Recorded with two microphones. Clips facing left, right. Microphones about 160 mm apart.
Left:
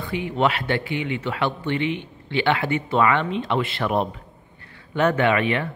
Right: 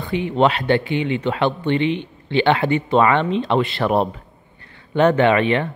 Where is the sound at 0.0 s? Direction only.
25° right (ahead or behind).